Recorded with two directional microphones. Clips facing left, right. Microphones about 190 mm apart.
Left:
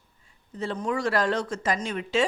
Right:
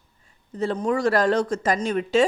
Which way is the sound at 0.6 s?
40° right (ahead or behind).